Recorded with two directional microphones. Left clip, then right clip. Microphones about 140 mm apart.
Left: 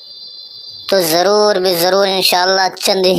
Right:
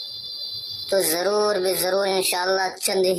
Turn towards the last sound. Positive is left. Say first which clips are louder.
# left 9 dB
turn(degrees=35)  # may be behind; listen again after turning